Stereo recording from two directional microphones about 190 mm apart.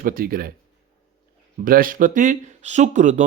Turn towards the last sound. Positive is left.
turn(degrees=-40)  # may be behind; listen again after turning